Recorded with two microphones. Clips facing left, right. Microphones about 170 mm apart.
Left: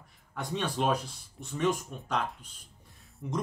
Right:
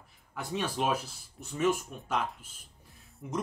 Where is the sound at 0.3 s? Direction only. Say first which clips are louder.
Left 1 dB; 5° right (ahead or behind).